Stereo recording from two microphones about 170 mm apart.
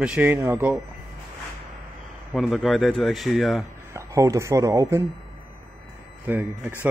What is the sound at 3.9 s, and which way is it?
Speech, 20° right (ahead or behind).